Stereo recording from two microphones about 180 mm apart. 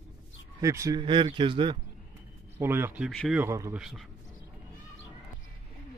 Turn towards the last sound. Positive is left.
turn(degrees=0)  # may be behind; listen again after turning